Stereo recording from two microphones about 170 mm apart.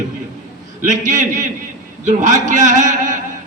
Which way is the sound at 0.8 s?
50° right (ahead or behind).